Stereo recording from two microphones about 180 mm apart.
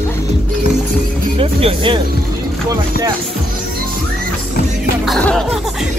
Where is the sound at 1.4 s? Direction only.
30° right (ahead or behind).